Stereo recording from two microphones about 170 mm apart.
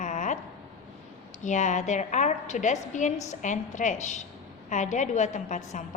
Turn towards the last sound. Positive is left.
turn(degrees=45)  # may be behind; listen again after turning